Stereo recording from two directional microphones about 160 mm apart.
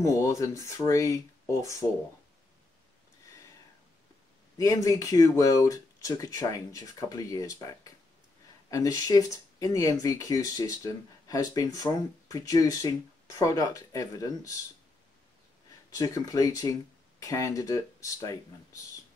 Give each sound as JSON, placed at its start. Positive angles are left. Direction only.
{"t": 0.0, "sound": "speech", "side_deg": 20}
{"t": 4.6, "sound": "speech", "side_deg": 20}
{"t": 15.9, "sound": "speech", "side_deg": 20}